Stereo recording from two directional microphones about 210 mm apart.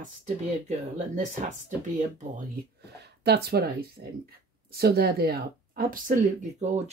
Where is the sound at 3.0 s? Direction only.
50° right (ahead or behind).